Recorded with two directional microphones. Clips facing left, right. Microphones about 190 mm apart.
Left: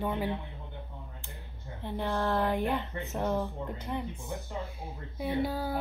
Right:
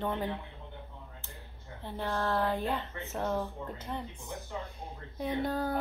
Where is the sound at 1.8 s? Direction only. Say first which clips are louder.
Left 2 dB; 15° left (ahead or behind).